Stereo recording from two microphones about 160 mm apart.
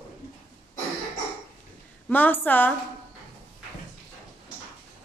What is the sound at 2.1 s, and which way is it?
Speech, 10° left (ahead or behind).